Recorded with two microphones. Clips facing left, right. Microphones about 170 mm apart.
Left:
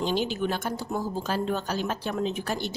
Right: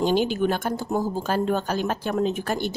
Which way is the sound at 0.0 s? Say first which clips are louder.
Right 5 dB; 50° right (ahead or behind).